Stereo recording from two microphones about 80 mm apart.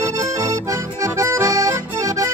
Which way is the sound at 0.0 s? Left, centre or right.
Right.